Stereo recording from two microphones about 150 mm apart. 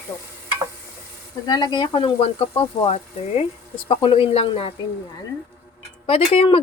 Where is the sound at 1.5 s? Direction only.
30° left (ahead or behind).